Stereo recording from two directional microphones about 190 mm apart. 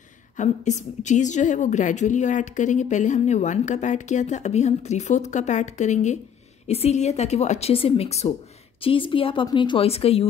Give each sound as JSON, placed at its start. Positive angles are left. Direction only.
{"t": 0.4, "sound": "a woman's voice", "side_deg": 40}